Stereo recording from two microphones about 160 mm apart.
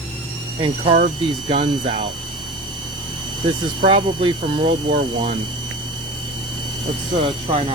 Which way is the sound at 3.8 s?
30° right (ahead or behind).